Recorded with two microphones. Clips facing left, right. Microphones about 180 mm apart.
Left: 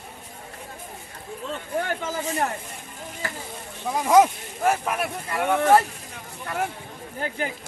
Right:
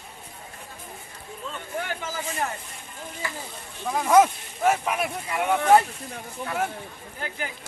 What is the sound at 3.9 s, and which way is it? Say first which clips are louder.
Speech: left 1 dB; 15° left (ahead or behind).